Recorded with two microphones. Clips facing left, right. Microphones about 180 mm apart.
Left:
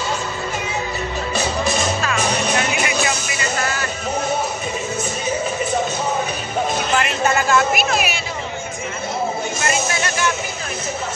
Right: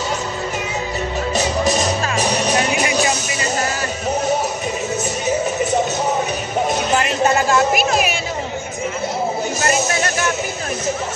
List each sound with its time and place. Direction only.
1.3 s music: 40° right (ahead or behind)
6.9 s vehicle: 20° right (ahead or behind)
7.4 s a sound: 35° right (ahead or behind)
9.6 s music: 40° right (ahead or behind)